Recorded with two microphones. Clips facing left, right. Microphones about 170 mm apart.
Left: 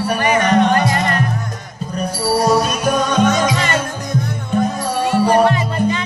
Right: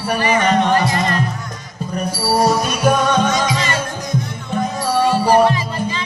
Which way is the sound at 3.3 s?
55° left (ahead or behind).